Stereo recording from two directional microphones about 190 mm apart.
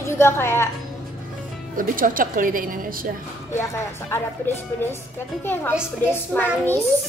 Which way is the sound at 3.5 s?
15° left (ahead or behind).